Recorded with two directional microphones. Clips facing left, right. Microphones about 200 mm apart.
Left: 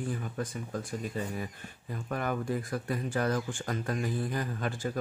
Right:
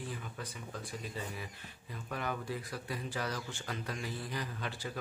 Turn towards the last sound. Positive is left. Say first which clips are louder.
# left 7 dB
turn(degrees=50)  # may be behind; listen again after turning